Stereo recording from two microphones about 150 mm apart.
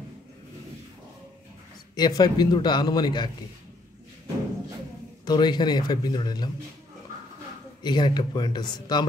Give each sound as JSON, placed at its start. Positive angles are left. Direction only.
{"t": 2.0, "sound": "a man's voice", "side_deg": 25}
{"t": 5.2, "sound": "a man's voice", "side_deg": 30}
{"t": 7.8, "sound": "a man's voice", "side_deg": 30}